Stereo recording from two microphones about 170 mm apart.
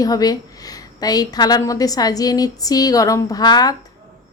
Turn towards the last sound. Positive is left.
turn(degrees=25)  # may be behind; listen again after turning